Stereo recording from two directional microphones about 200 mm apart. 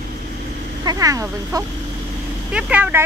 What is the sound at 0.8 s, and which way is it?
Speech, 15° right (ahead or behind).